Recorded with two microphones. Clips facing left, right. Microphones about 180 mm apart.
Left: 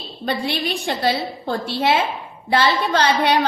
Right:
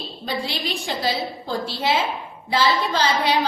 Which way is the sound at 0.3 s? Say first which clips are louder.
Left 4 dB; 60° left (ahead or behind).